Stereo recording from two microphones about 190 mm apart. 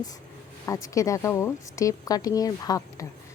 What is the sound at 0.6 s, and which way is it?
Speech, 15° left (ahead or behind).